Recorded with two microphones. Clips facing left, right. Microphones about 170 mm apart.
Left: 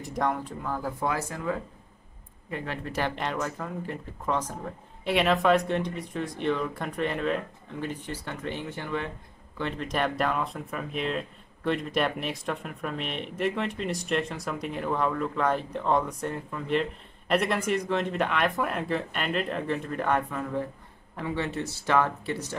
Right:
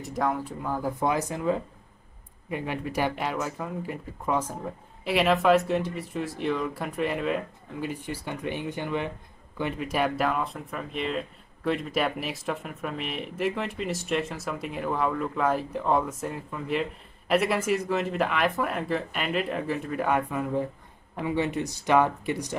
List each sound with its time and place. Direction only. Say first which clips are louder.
0.0 s speech: right 1 dB; centre (ahead or behind)